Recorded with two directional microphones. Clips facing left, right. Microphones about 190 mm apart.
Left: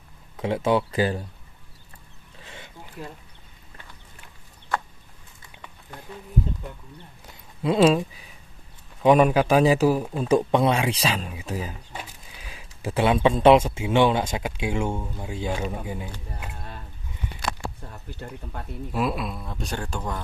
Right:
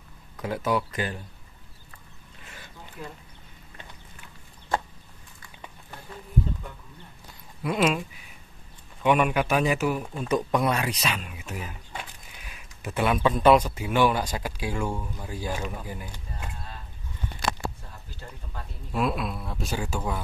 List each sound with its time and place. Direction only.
0.4 s speech: 25° left (ahead or behind)
2.4 s a sound: 25° left (ahead or behind)
7.6 s speech: 30° left (ahead or behind)
9.0 s speech: 35° left (ahead or behind)
12.4 s speech: 30° left (ahead or behind)
18.9 s speech: centre (ahead or behind)